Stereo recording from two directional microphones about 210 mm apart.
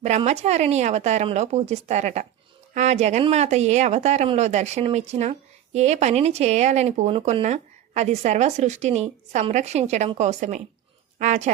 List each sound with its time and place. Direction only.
0.0 s speech: 30° right (ahead or behind)